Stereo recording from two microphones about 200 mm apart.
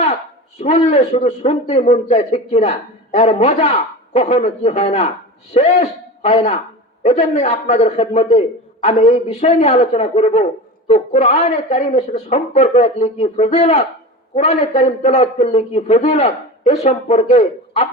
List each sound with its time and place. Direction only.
0.6 s a man's voice: 35° left (ahead or behind)